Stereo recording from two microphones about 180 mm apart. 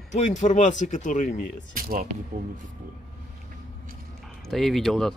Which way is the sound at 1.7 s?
50° right (ahead or behind).